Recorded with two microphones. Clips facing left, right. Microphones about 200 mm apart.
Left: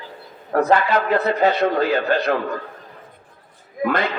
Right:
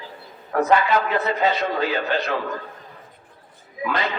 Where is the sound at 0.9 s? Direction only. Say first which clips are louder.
Left 3 dB; 60° left (ahead or behind).